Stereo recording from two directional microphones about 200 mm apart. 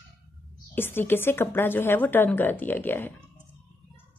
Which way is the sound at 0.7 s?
10° left (ahead or behind).